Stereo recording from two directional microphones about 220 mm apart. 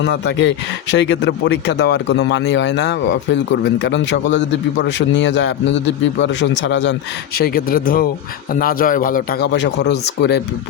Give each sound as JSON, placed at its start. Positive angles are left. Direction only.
{"t": 0.0, "sound": "a man's voice", "side_deg": 55}
{"t": 7.3, "sound": "a man's voice", "side_deg": 45}